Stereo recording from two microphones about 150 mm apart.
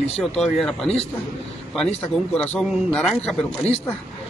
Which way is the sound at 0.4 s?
Centre (ahead or behind).